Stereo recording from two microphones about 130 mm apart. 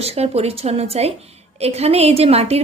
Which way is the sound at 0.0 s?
50° right (ahead or behind).